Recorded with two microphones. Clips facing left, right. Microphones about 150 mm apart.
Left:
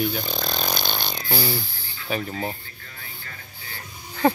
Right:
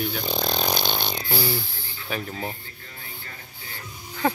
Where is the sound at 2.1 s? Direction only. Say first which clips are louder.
Left 3 dB; centre (ahead or behind).